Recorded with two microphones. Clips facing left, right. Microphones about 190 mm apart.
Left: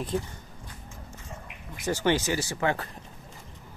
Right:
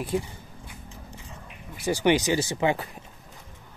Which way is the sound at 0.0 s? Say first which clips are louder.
Right 2 dB; 10° right (ahead or behind).